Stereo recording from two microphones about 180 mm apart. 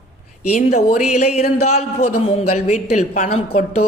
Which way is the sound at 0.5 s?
45° left (ahead or behind).